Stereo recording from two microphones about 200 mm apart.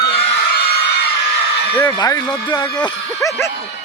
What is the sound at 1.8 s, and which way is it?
Speech, 15° left (ahead or behind).